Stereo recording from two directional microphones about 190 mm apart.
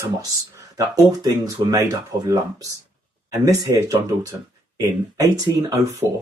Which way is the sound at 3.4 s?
20° right (ahead or behind).